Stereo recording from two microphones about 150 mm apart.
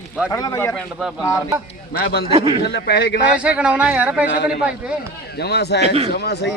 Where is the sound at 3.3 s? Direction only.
10° right (ahead or behind).